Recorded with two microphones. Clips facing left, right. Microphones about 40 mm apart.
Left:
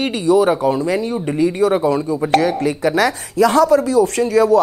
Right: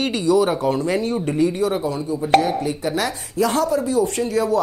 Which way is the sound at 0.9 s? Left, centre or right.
Left.